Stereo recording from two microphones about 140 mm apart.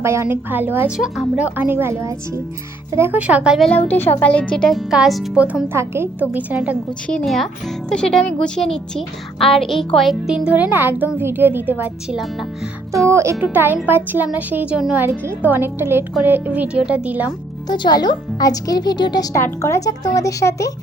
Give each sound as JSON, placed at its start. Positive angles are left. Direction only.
{"t": 0.0, "sound": "a woman's voice", "side_deg": -20}
{"t": 0.9, "sound": "a woman's voice", "side_deg": -5}
{"t": 3.7, "sound": "speech", "side_deg": 10}
{"t": 7.1, "sound": "a woman's voice", "side_deg": 5}
{"t": 13.1, "sound": "a woman's voice", "side_deg": -20}
{"t": 17.7, "sound": "speech", "side_deg": 30}